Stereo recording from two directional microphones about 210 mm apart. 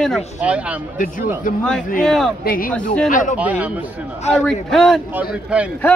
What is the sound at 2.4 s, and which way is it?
Speech, 40° left (ahead or behind).